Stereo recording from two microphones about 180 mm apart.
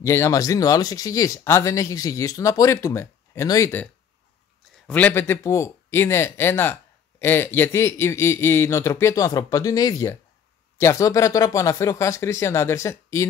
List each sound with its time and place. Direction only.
0.0 s speech: 15° left (ahead or behind)